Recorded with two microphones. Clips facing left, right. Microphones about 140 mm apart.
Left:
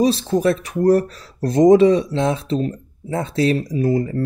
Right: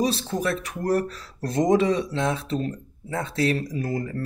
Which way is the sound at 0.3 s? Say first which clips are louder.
Left 8 dB; 30° left (ahead or behind).